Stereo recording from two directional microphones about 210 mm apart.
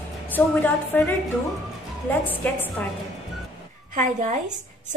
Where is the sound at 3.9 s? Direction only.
35° right (ahead or behind).